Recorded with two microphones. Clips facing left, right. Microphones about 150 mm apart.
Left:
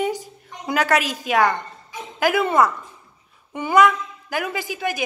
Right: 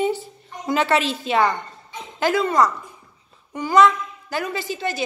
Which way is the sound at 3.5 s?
20° left (ahead or behind).